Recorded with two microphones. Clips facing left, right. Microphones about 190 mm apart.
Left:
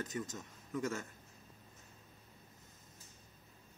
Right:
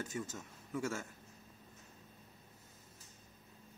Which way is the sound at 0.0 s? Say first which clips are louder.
Left 1 dB; 10° right (ahead or behind).